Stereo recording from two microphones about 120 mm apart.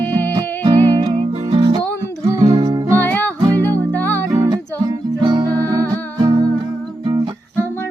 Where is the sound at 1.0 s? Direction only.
50° right (ahead or behind).